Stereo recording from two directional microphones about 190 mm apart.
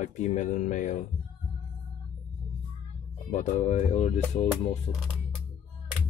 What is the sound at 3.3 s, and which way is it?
Speech, 40° left (ahead or behind).